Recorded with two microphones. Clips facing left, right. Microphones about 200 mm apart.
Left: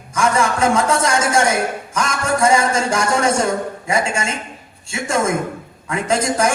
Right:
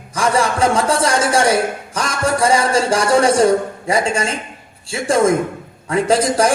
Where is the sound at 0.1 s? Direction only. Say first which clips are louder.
Right 1 dB; 35° right (ahead or behind).